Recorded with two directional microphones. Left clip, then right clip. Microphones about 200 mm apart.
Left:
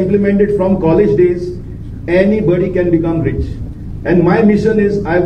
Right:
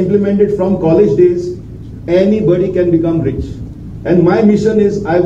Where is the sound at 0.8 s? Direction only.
15° left (ahead or behind).